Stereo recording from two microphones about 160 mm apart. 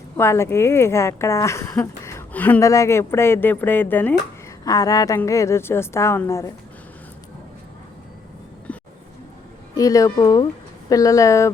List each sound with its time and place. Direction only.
0.2 s speech: 15° left (ahead or behind)
4.6 s a woman's voice: 20° left (ahead or behind)
8.7 s a sound: 10° left (ahead or behind)
9.7 s speech: 20° left (ahead or behind)